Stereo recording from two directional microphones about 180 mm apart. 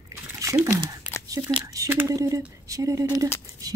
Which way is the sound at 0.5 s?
15° right (ahead or behind).